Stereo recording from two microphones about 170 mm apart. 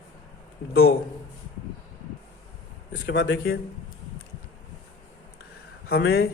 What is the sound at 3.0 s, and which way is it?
Speech, 65° left (ahead or behind).